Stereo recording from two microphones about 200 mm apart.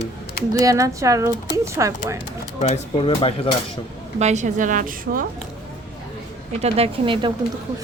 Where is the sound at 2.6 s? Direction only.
30° left (ahead or behind).